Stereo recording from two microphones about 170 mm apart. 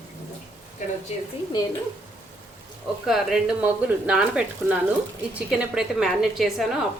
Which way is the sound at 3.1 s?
5° right (ahead or behind).